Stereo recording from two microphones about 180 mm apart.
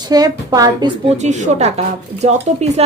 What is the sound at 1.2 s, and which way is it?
Speech, 40° right (ahead or behind).